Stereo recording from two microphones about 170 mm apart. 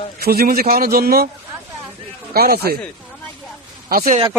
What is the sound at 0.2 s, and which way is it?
A man's voice, 65° right (ahead or behind).